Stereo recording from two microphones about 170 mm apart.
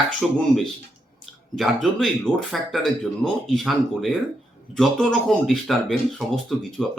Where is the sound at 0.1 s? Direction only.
Centre (ahead or behind).